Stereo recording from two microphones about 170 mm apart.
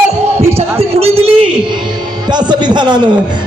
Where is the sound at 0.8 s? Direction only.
35° right (ahead or behind).